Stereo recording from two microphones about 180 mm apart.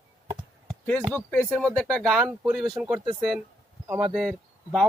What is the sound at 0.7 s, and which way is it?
Chop, 5° left (ahead or behind).